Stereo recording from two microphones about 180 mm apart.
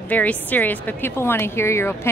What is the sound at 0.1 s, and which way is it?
A woman's voice, 10° left (ahead or behind).